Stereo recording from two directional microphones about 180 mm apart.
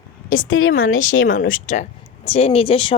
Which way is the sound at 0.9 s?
50° left (ahead or behind).